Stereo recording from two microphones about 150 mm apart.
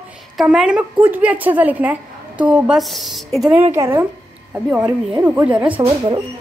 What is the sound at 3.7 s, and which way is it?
Speech, 20° right (ahead or behind).